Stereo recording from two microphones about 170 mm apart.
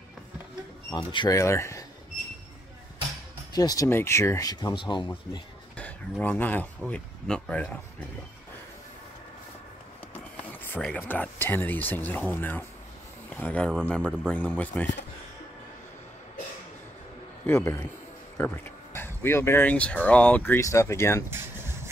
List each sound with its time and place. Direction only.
0.9 s speech: 25° left (ahead or behind)
3.5 s speech: 20° left (ahead or behind)
5.8 s speech: 10° left (ahead or behind)
10.3 s speech: 10° left (ahead or behind)
17.5 s speech: 15° left (ahead or behind)